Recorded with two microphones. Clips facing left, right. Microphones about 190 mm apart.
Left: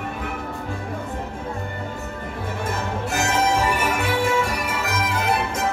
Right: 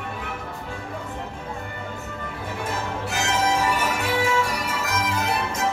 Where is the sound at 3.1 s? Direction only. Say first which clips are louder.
Left 2 dB; 50° left (ahead or behind).